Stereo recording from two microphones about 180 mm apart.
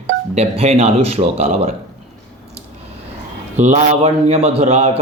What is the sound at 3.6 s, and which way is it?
Speech, 40° right (ahead or behind).